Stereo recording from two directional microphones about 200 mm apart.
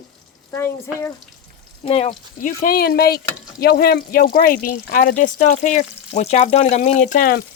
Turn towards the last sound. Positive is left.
turn(degrees=45)  # may be behind; listen again after turning